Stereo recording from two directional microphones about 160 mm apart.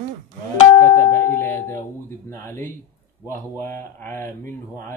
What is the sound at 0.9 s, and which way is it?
Speech, 15° left (ahead or behind).